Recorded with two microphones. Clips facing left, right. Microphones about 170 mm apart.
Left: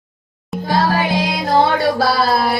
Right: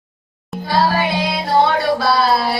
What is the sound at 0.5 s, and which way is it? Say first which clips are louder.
Music: left 3 dB; centre (ahead or behind).